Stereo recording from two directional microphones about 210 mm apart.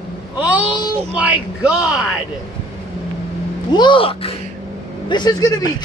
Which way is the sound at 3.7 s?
25° left (ahead or behind).